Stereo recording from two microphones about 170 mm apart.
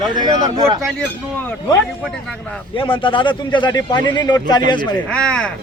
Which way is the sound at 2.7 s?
30° left (ahead or behind).